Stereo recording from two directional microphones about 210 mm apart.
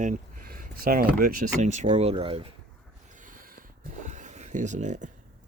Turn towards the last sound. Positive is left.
turn(degrees=-35)  # may be behind; listen again after turning